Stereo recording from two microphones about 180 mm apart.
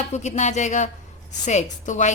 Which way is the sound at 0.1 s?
40° left (ahead or behind).